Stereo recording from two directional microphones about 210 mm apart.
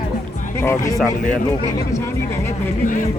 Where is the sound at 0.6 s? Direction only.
10° left (ahead or behind).